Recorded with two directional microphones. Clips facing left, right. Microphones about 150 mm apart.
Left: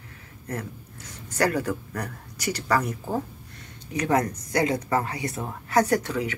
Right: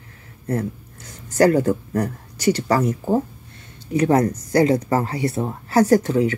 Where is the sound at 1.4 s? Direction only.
30° right (ahead or behind).